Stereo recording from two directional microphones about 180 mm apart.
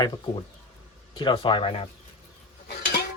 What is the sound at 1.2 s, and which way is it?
Speech, 25° left (ahead or behind).